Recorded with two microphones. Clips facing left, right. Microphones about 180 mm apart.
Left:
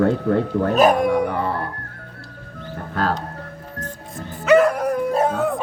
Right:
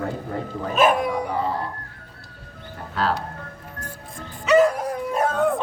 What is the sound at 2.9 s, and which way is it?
Music, 45° left (ahead or behind).